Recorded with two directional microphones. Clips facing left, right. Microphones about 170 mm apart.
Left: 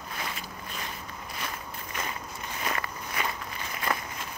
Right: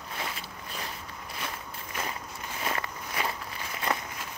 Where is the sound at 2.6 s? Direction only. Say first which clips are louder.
Even; 25° right (ahead or behind).